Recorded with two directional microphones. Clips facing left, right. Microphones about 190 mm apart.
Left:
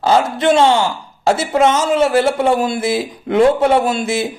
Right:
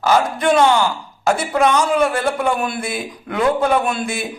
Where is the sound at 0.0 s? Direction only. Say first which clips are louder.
Left 2 dB; 25° left (ahead or behind).